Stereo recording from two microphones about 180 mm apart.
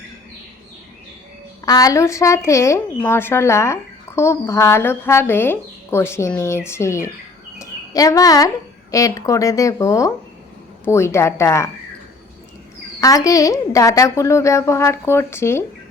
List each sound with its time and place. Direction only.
1.6 s a woman's voice: 20° left (ahead or behind)
7.6 s a sound: 20° left (ahead or behind)
8.9 s a woman's voice: 20° left (ahead or behind)
13.0 s a woman's voice: 20° left (ahead or behind)